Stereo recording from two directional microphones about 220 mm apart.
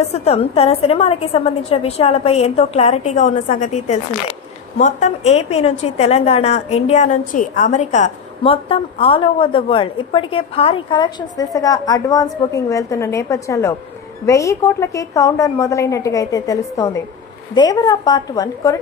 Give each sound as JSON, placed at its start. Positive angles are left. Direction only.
{"t": 0.1, "sound": "a woman's voice", "side_deg": 30}